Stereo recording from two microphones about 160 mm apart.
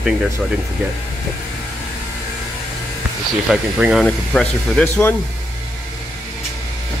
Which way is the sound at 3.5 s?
5° right (ahead or behind).